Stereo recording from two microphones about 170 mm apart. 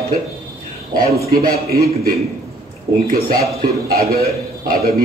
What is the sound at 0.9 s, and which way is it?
Speech, 65° right (ahead or behind).